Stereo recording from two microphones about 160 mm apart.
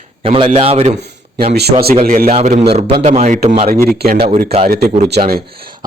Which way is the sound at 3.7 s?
70° right (ahead or behind).